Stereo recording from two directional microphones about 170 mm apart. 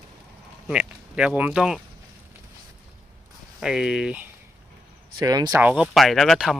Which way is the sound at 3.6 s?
5° right (ahead or behind).